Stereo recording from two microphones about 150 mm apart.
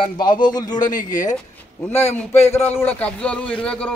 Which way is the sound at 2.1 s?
15° left (ahead or behind).